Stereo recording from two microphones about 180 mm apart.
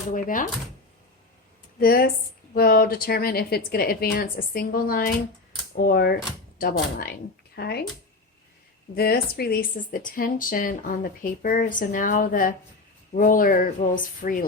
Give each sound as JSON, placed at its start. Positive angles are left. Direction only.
{"t": 0.1, "sound": "speech", "side_deg": 50}
{"t": 1.8, "sound": "a woman's voice", "side_deg": 55}
{"t": 9.0, "sound": "speech", "side_deg": 60}